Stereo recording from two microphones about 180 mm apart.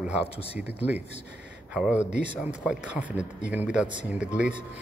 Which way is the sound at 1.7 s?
5° right (ahead or behind).